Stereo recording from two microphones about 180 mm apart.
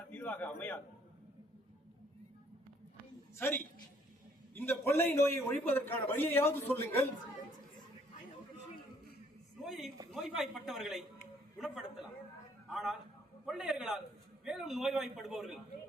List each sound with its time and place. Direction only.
0.1 s a man's voice: 10° left (ahead or behind)
3.3 s a man's voice: 10° left (ahead or behind)
9.6 s a man's voice: centre (ahead or behind)